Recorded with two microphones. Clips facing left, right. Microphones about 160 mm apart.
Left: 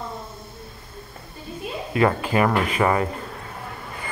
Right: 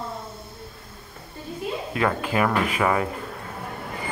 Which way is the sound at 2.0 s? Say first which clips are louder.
Left 4 dB; centre (ahead or behind).